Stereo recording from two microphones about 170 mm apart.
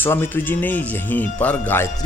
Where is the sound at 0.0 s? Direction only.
15° left (ahead or behind).